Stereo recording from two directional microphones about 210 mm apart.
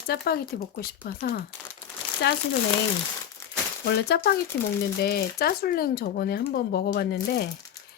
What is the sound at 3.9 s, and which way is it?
Speech, 50° left (ahead or behind).